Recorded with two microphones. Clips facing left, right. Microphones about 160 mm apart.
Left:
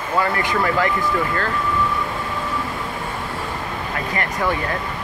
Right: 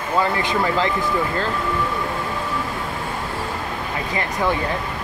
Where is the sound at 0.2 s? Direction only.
25° right (ahead or behind).